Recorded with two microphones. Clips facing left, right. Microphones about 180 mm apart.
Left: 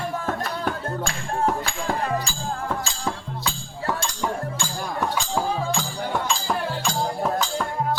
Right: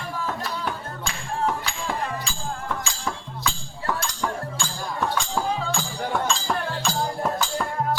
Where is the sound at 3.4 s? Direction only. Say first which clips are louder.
Even; 30° left (ahead or behind).